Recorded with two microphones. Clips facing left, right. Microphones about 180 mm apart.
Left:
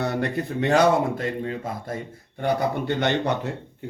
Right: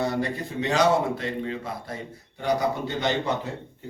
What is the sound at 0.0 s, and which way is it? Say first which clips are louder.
Speech: left 1 dB; 60° left (ahead or behind).